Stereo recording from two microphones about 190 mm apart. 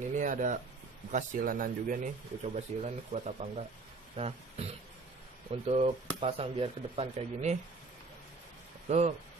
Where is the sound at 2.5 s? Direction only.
35° right (ahead or behind).